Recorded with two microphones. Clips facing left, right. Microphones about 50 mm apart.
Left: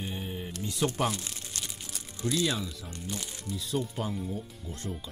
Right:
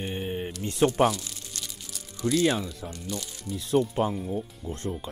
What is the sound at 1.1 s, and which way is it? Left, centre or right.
Crumpling, left.